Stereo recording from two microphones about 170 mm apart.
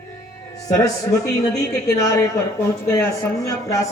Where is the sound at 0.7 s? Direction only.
20° left (ahead or behind).